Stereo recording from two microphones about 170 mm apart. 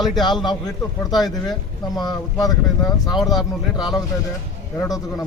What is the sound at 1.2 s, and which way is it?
Speech, 25° left (ahead or behind).